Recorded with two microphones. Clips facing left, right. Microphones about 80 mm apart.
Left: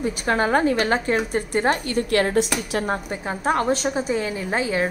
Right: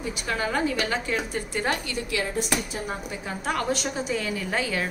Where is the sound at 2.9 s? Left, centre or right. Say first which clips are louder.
Left 6 dB; left.